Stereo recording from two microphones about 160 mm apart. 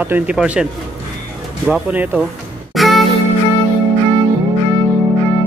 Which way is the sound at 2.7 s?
Centre (ahead or behind).